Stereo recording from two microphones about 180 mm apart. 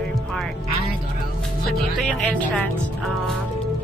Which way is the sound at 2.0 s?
Centre (ahead or behind).